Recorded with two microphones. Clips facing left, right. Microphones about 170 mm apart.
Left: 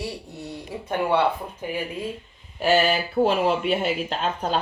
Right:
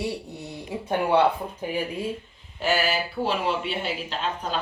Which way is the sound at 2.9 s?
45° left (ahead or behind).